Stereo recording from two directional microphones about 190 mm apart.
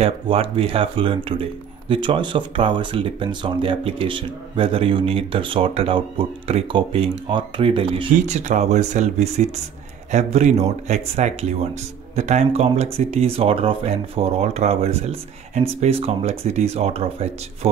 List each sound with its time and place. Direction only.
0.0 s speech: 30° right (ahead or behind)